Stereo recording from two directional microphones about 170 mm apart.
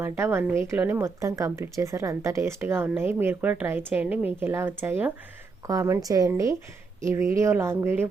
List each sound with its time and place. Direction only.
0.0 s speech: 15° right (ahead or behind)